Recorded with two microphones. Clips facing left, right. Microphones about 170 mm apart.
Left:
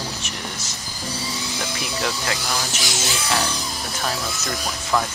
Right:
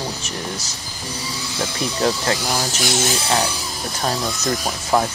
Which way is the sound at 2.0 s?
35° right (ahead or behind).